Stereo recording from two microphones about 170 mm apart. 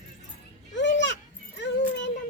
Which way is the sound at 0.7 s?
90° left.